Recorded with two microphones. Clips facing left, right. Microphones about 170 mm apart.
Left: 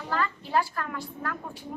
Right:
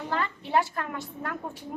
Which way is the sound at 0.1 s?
25° right (ahead or behind).